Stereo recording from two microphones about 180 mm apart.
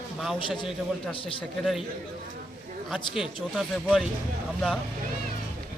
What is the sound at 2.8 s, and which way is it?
Speech, centre (ahead or behind).